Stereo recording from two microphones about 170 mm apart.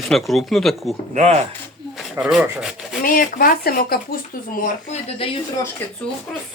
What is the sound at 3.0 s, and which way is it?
Speech, 60° left (ahead or behind).